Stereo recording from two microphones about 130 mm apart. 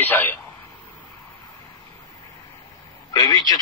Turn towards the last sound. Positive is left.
turn(degrees=30)  # may be behind; listen again after turning